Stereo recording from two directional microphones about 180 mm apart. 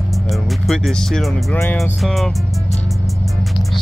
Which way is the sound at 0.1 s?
Centre (ahead or behind).